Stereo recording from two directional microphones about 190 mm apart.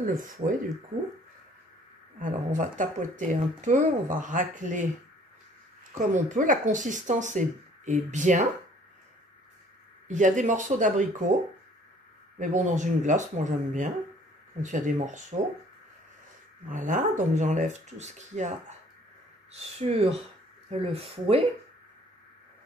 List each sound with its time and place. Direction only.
0.0 s speech: 45° right (ahead or behind)
2.1 s speech: 45° right (ahead or behind)
5.9 s speech: 40° right (ahead or behind)
10.0 s speech: 40° right (ahead or behind)
12.4 s speech: 40° right (ahead or behind)
16.6 s speech: 45° right (ahead or behind)
19.8 s speech: 35° right (ahead or behind)